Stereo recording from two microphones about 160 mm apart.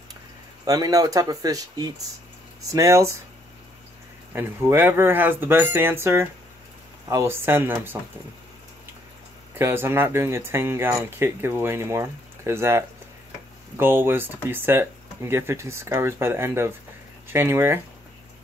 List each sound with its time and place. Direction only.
0.7 s speech: 20° right (ahead or behind)
4.3 s speech: 15° right (ahead or behind)
9.5 s speech: 15° right (ahead or behind)